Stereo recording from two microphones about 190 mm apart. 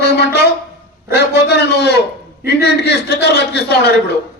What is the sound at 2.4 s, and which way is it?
A man's voice, 60° left (ahead or behind).